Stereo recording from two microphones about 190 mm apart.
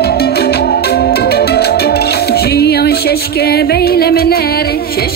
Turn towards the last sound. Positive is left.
turn(degrees=55)  # may be behind; listen again after turning